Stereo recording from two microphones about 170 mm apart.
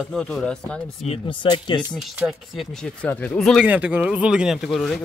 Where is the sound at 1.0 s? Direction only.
35° left (ahead or behind).